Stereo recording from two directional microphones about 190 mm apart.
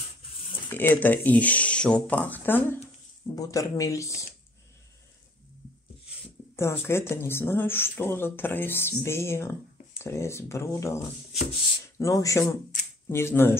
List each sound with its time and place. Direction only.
0.7 s speech: 10° left (ahead or behind)
6.5 s speech: 15° left (ahead or behind)